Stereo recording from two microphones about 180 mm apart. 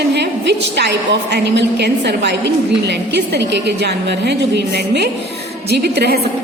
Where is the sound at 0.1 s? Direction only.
70° right (ahead or behind).